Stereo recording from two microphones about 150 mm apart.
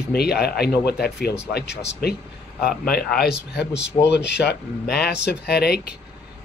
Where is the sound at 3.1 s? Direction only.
90° left.